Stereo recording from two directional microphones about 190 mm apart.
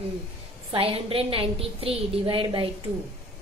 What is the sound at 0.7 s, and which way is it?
A woman's voice, 30° right (ahead or behind).